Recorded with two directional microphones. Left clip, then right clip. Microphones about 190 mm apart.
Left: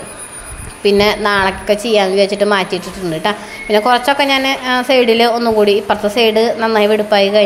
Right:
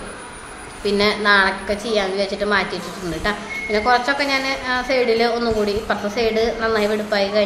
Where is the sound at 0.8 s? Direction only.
35° left (ahead or behind).